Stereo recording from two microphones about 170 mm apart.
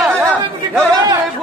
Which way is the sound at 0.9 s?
20° right (ahead or behind).